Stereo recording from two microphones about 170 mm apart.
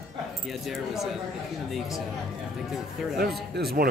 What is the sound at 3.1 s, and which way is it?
Speech, 65° right (ahead or behind).